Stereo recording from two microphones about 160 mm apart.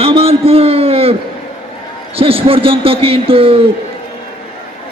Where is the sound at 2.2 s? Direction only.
35° right (ahead or behind).